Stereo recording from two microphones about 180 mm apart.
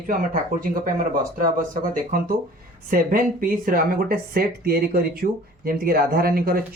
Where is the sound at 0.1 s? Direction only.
50° right (ahead or behind).